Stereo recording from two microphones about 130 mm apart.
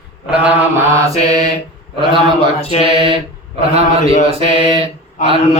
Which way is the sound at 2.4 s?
50° left (ahead or behind).